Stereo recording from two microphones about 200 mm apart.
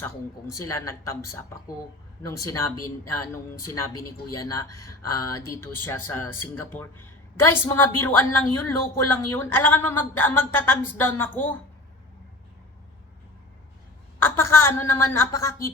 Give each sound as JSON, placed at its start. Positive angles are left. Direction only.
{"t": 0.0, "sound": "a woman's voice", "side_deg": 15}
{"t": 14.2, "sound": "a woman's voice", "side_deg": 10}